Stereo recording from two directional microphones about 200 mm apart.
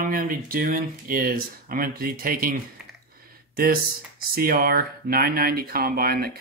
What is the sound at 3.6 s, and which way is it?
Speech, 45° right (ahead or behind).